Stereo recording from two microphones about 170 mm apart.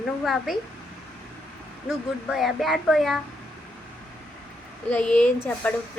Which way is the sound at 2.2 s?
Centre (ahead or behind).